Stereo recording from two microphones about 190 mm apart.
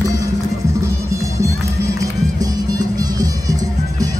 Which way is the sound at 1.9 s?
20° right (ahead or behind).